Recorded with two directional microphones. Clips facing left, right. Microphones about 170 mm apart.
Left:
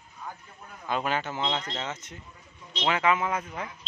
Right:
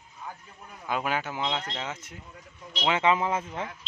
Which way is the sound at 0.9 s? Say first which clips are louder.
Even; 10° right (ahead or behind).